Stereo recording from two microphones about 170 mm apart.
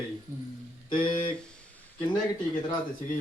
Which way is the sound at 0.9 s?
30° left (ahead or behind).